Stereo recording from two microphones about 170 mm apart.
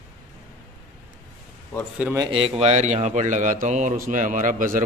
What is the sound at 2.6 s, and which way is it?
A man's voice, 45° right (ahead or behind).